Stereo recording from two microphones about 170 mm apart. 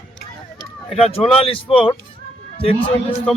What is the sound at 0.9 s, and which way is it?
A man's voice, 35° left (ahead or behind).